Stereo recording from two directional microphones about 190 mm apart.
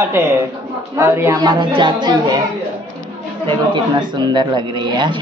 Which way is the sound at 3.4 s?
25° right (ahead or behind).